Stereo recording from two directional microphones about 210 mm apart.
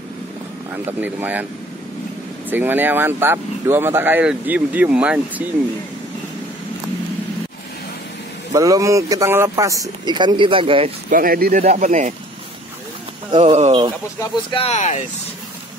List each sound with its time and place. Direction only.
1.0 s speech: 10° right (ahead or behind)
2.5 s speech: 10° right (ahead or behind)
8.5 s speech: 15° right (ahead or behind)
11.1 s speech: 45° right (ahead or behind)
13.3 s speech: 20° right (ahead or behind)
14.2 s speech: 25° left (ahead or behind)